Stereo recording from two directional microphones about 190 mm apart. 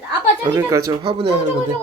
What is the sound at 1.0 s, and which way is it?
Speech, 30° right (ahead or behind).